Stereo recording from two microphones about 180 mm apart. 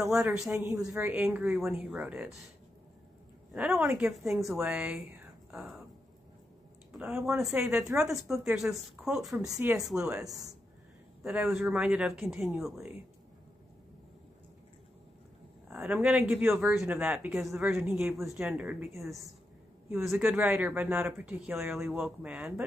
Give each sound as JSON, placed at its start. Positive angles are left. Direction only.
{"t": 0.1, "sound": "speech", "side_deg": -5}
{"t": 0.8, "sound": "speech", "side_deg": -15}
{"t": 3.5, "sound": "speech", "side_deg": -5}
{"t": 7.0, "sound": "speech", "side_deg": -5}
{"t": 9.5, "sound": "speech", "side_deg": -10}
{"t": 10.1, "sound": "speech", "side_deg": -20}
{"t": 11.2, "sound": "speech", "side_deg": -5}
{"t": 15.7, "sound": "speech", "side_deg": -10}
{"t": 19.9, "sound": "speech", "side_deg": -15}